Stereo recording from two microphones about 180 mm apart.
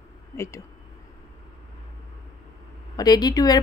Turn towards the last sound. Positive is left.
turn(degrees=20)  # may be behind; listen again after turning